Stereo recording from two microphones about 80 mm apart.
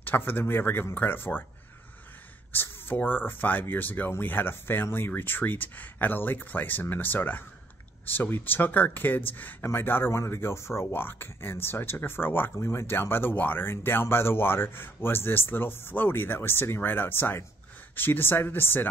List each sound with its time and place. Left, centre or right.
0.0 s speech: left
2.5 s speech: left